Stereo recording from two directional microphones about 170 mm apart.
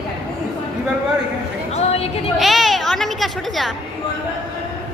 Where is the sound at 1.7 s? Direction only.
40° left (ahead or behind).